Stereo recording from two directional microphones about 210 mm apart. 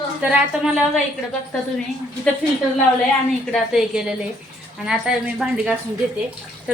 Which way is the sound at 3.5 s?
Centre (ahead or behind).